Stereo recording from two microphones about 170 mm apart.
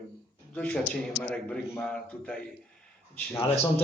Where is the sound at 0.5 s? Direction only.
5° left (ahead or behind).